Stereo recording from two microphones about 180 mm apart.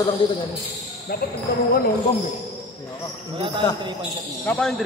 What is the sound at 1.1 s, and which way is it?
Speech, 60° left (ahead or behind).